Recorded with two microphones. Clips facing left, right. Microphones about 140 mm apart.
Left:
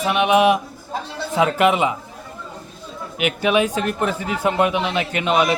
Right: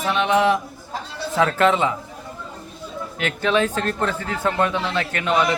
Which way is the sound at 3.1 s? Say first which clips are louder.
Left 2 dB; 15° left (ahead or behind).